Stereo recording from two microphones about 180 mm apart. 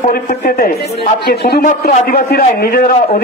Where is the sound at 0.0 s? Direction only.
45° left (ahead or behind).